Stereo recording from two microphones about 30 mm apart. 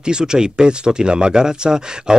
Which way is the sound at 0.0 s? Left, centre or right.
Right.